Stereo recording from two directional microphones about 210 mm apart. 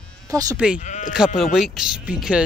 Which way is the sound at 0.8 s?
35° left (ahead or behind).